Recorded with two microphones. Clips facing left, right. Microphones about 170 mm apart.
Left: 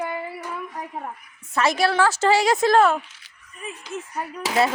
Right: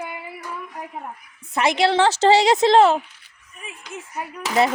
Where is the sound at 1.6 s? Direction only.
20° right (ahead or behind).